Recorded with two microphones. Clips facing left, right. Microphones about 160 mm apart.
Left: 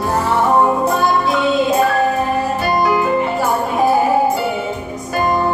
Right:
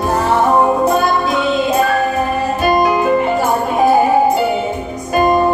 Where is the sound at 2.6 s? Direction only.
20° right (ahead or behind).